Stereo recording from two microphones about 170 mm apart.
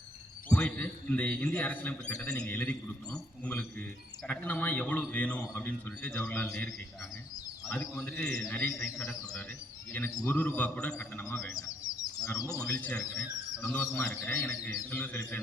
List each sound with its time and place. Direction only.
0.4 s a man's voice: 5° left (ahead or behind)
7.7 s a man's voice: 10° left (ahead or behind)
9.9 s a man's voice: 10° left (ahead or behind)